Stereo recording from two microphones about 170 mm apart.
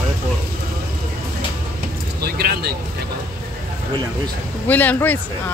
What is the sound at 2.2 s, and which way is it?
Speech, 65° right (ahead or behind).